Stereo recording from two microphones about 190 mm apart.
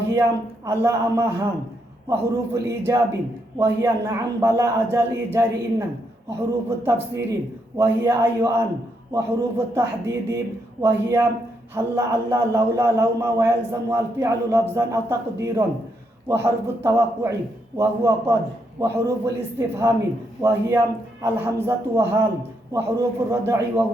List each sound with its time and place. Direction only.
0.1 s a man's voice: 15° right (ahead or behind)
6.7 s a man's voice: 15° right (ahead or behind)